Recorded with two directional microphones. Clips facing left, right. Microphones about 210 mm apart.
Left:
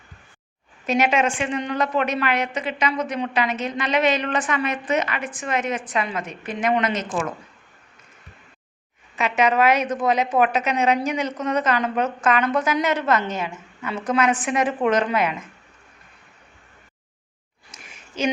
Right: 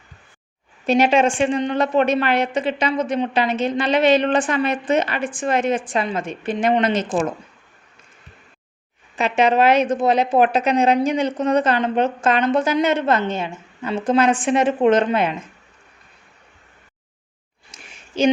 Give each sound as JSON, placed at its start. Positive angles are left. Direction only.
{"t": 0.9, "sound": "a woman's voice", "side_deg": -30}
{"t": 9.1, "sound": "a woman's voice", "side_deg": -30}
{"t": 17.7, "sound": "a sound", "side_deg": -30}